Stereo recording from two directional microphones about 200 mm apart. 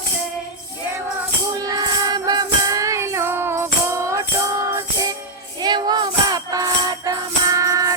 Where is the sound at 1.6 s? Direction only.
20° right (ahead or behind).